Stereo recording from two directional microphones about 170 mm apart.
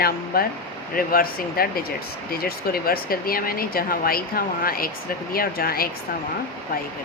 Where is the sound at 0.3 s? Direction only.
60° left (ahead or behind).